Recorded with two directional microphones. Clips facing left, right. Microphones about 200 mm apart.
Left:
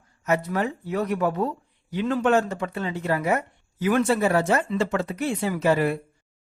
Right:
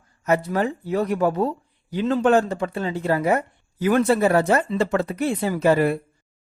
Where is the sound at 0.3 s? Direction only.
35° right (ahead or behind).